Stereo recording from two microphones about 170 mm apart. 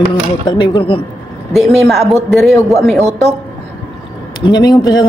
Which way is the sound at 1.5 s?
Centre (ahead or behind).